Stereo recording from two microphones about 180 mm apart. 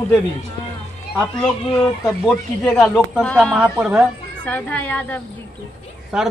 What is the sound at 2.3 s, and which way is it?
A man's voice, 5° left (ahead or behind).